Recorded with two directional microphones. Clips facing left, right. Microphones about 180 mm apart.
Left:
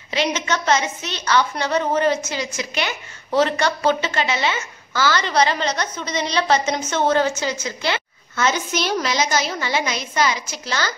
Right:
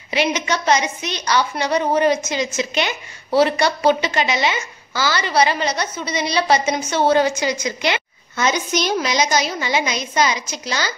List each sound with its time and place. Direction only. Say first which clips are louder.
0.1 s a woman's voice: right 2 dB; 10° right (ahead or behind)
3.3 s a woman's voice: right 2 dB; 10° right (ahead or behind)